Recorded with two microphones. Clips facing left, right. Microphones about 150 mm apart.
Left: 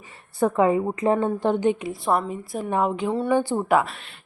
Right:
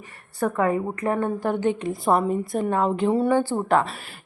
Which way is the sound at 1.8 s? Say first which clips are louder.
Right 2 dB; centre (ahead or behind).